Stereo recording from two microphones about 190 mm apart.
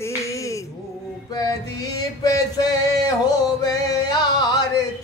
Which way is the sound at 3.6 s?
20° left (ahead or behind).